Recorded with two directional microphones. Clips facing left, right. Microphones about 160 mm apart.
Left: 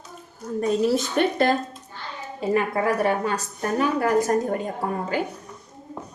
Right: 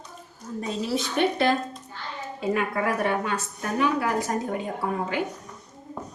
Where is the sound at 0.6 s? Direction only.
50° left (ahead or behind).